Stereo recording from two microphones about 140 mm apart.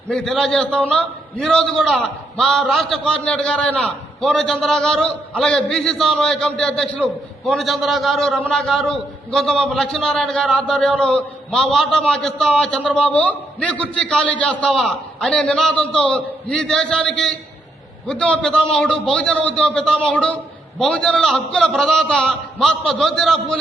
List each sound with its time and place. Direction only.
0.1 s a man's voice: 5° left (ahead or behind)